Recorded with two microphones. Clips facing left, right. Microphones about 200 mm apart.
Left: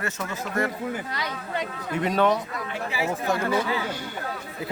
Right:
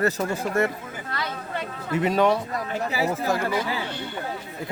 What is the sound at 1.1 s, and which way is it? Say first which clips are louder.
Speech: even; 15° left (ahead or behind).